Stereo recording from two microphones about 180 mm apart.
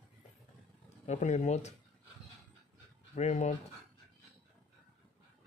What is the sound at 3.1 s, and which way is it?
Speech, 40° left (ahead or behind).